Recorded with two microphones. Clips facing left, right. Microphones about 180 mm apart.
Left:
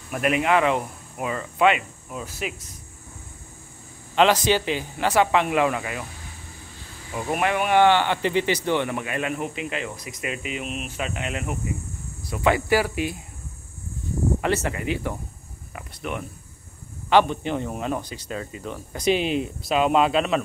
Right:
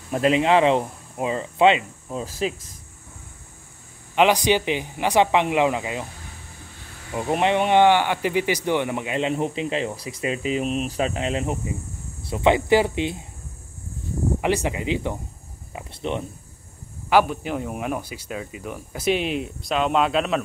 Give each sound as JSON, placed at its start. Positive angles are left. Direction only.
{"t": 0.1, "sound": "speech", "side_deg": -25}
{"t": 4.1, "sound": "speech", "side_deg": -15}
{"t": 7.2, "sound": "speech", "side_deg": -25}
{"t": 14.4, "sound": "speech", "side_deg": -15}
{"t": 17.1, "sound": "speech", "side_deg": -5}
{"t": 19.0, "sound": "speech", "side_deg": 0}